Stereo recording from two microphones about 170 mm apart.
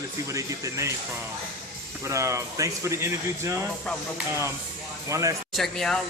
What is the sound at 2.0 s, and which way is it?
Speech, 15° right (ahead or behind).